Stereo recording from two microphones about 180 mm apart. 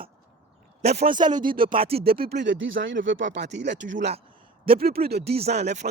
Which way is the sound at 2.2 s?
70° right (ahead or behind).